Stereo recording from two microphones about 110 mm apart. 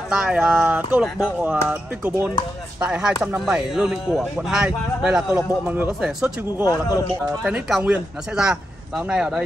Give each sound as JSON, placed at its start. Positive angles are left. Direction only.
{"t": 0.1, "sound": "speech", "side_deg": -10}
{"t": 1.0, "sound": "speech", "side_deg": -5}
{"t": 2.8, "sound": "speech", "side_deg": -5}
{"t": 6.6, "sound": "speech", "side_deg": 30}
{"t": 7.4, "sound": "speech", "side_deg": -5}